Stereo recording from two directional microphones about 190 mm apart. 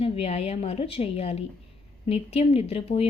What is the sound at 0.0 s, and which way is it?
Speech, 30° left (ahead or behind).